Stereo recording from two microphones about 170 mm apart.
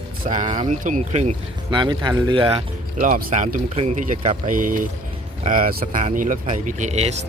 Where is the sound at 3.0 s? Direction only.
55° right (ahead or behind).